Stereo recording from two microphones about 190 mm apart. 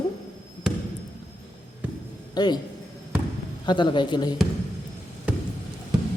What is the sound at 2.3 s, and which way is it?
Speech, 20° left (ahead or behind).